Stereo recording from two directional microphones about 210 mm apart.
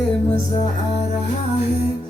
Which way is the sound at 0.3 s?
30° left (ahead or behind).